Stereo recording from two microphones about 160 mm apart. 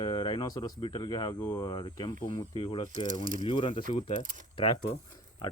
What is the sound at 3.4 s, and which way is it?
Speech, 30° left (ahead or behind).